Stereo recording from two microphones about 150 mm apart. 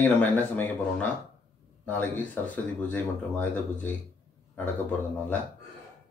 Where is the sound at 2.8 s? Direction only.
10° left (ahead or behind).